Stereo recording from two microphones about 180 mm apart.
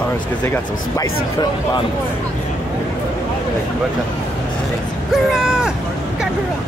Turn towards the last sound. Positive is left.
turn(degrees=-5)  # may be behind; listen again after turning